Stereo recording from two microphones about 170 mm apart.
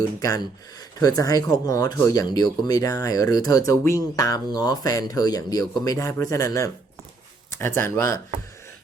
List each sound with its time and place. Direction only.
0.2 s speech: 20° left (ahead or behind)